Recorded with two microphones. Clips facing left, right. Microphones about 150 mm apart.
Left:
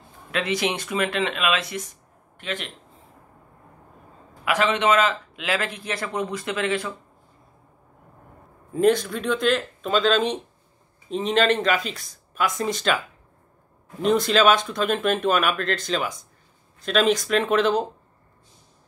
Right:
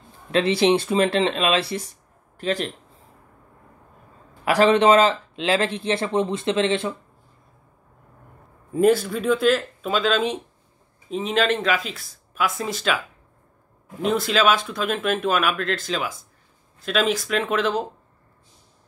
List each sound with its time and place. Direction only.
0.3 s speech: 30° right (ahead or behind)
4.5 s a man's voice: 35° right (ahead or behind)
8.7 s speech: 5° right (ahead or behind)
14.0 s speech: 5° right (ahead or behind)